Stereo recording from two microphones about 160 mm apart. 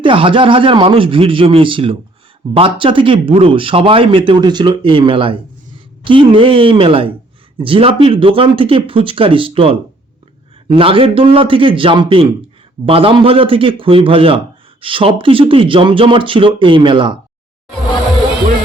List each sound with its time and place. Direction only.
0.0 s a man's voice: 30° right (ahead or behind)